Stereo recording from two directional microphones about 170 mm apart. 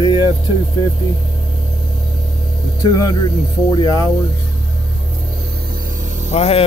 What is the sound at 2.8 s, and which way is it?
Speech, 20° left (ahead or behind).